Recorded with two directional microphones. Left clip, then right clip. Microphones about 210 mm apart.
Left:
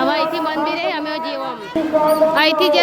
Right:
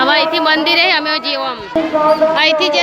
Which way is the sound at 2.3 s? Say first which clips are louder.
Right 2 dB; 25° left (ahead or behind).